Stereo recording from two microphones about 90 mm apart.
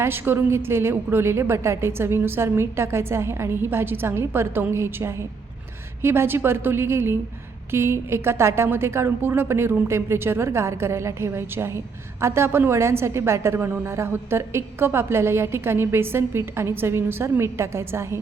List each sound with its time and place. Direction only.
0.0 s a woman's voice: 25° right (ahead or behind)